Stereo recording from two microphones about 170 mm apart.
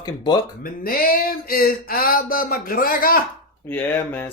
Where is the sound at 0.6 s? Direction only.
60° left (ahead or behind).